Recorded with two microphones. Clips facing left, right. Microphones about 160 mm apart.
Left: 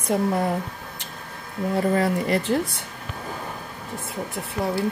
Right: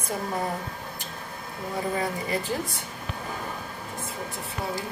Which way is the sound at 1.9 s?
70° left (ahead or behind).